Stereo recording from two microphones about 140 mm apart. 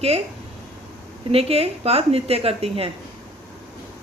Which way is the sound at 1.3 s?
45° right (ahead or behind).